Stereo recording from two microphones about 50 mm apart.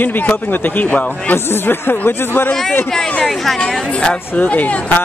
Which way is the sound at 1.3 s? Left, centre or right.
Left.